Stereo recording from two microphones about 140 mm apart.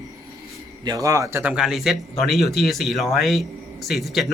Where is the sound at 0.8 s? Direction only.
25° right (ahead or behind).